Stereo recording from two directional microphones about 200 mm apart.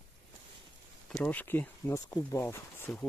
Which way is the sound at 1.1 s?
5° left (ahead or behind).